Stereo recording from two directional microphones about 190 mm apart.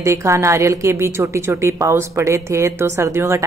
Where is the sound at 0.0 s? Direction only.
15° right (ahead or behind).